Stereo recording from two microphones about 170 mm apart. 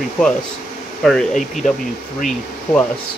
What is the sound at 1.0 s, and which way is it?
Speech, centre (ahead or behind).